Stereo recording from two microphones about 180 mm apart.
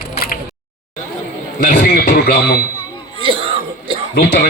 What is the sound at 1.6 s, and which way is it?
Speech, 50° left (ahead or behind).